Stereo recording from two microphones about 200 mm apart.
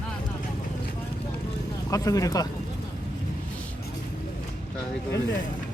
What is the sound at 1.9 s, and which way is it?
Speech, 15° left (ahead or behind).